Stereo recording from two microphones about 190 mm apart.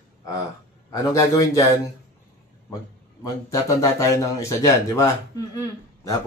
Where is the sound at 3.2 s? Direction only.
15° left (ahead or behind).